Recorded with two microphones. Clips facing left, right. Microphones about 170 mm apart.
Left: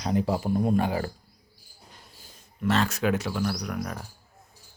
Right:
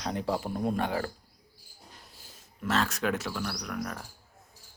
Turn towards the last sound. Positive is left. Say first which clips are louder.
# left 3 dB
turn(degrees=5)  # may be behind; listen again after turning